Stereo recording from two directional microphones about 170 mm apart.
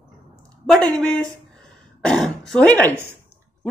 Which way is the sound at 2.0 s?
Centre (ahead or behind).